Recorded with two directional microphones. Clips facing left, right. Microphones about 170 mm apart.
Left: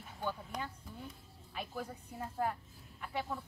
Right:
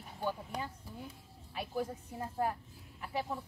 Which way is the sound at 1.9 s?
30° right (ahead or behind).